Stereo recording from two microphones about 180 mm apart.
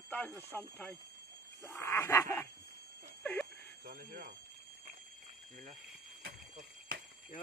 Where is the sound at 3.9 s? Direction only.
55° right (ahead or behind).